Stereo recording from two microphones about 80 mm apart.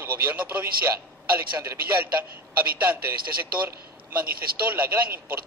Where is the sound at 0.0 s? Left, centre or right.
Right.